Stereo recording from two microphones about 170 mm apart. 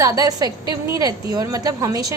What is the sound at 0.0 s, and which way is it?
A woman's voice, 20° right (ahead or behind).